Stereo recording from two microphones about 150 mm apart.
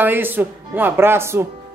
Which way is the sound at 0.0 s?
10° right (ahead or behind).